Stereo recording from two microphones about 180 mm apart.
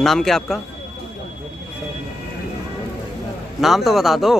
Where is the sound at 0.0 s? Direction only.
Centre (ahead or behind).